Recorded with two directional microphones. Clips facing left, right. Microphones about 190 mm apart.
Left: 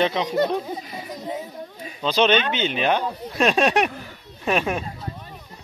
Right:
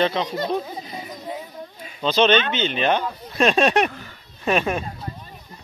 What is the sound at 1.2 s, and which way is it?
Oink, 25° left (ahead or behind).